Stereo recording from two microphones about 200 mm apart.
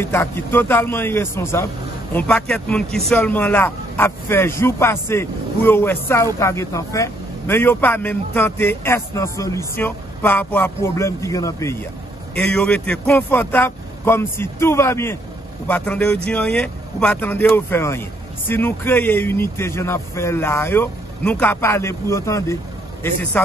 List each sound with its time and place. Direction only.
0.0 s a man's voice: 10° left (ahead or behind)